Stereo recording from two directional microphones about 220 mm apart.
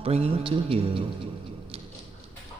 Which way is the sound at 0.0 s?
25° right (ahead or behind).